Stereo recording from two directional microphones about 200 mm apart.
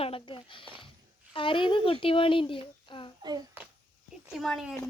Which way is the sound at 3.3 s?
20° right (ahead or behind).